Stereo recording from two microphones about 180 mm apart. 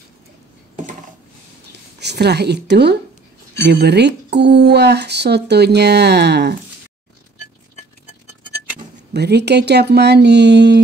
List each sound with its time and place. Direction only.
2.0 s speech: 65° right (ahead or behind)
9.1 s speech: 65° right (ahead or behind)